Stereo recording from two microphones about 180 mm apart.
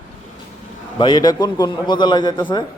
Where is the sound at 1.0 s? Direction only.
25° left (ahead or behind).